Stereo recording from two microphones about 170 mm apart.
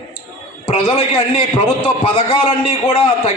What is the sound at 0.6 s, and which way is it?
A man's voice, 35° left (ahead or behind).